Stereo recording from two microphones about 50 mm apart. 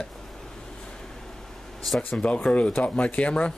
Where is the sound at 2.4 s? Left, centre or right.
Left.